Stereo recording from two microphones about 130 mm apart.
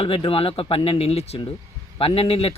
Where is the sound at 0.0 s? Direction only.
45° left (ahead or behind).